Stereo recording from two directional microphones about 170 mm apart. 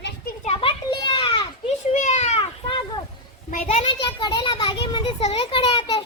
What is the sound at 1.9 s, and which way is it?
Children playing, 45° left (ahead or behind).